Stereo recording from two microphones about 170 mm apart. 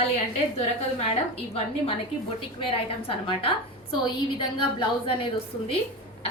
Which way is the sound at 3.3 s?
30° left (ahead or behind).